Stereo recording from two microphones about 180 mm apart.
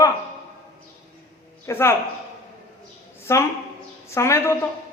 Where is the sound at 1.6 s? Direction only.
15° left (ahead or behind).